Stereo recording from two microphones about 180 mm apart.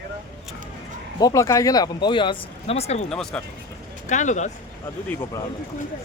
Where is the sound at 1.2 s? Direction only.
15° left (ahead or behind); by 3.1 s 35° left (ahead or behind).